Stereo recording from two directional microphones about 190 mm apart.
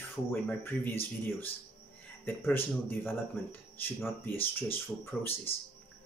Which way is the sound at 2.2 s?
10° left (ahead or behind).